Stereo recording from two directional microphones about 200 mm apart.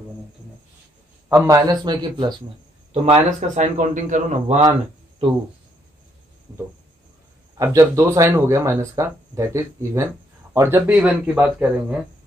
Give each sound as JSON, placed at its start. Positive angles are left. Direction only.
{"t": 1.3, "sound": "a man's voice", "side_deg": -15}
{"t": 2.9, "sound": "speech", "side_deg": -35}
{"t": 7.5, "sound": "speech", "side_deg": -15}